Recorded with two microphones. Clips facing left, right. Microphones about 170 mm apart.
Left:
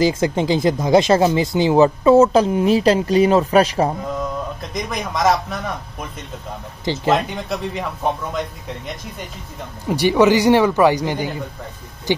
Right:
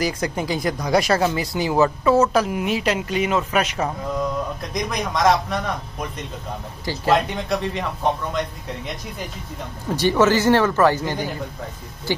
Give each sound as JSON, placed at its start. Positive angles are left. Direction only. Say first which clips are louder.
{"t": 0.0, "sound": "speech", "louder": "left 6 dB", "side_deg": 25}
{"t": 4.7, "sound": "speech", "louder": "even", "side_deg": 0}
{"t": 7.1, "sound": "speech", "louder": "right 1 dB", "side_deg": 0}
{"t": 9.8, "sound": "a man's voice", "louder": "left 3 dB", "side_deg": 15}